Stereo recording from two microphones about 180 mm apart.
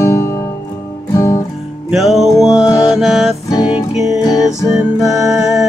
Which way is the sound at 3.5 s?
25° left (ahead or behind).